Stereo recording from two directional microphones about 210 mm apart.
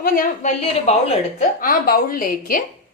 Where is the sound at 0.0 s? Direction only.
35° left (ahead or behind).